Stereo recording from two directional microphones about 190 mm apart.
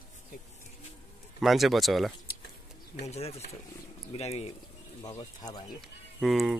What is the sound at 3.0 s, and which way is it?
Speech, 35° left (ahead or behind).